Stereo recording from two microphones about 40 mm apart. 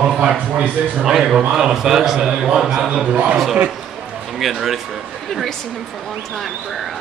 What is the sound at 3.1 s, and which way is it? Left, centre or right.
Speech, right.